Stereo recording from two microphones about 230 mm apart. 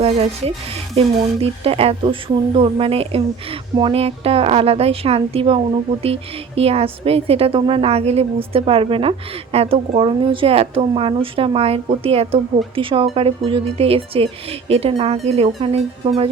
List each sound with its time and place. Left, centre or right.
0.0 s a woman's voice: right